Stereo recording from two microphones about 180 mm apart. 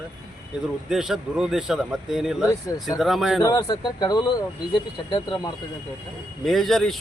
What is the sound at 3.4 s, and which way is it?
Speech, 20° left (ahead or behind).